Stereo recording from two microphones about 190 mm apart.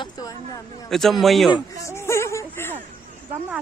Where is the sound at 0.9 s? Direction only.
Centre (ahead or behind).